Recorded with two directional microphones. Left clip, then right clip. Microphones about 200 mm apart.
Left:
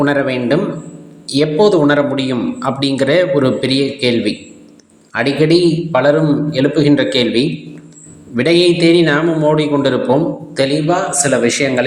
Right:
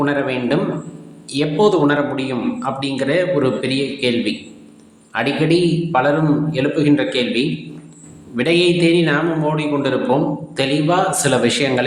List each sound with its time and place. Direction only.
0.0 s a man's voice: 25° left (ahead or behind)